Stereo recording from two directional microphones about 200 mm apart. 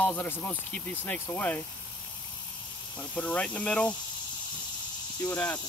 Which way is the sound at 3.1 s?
5° left (ahead or behind).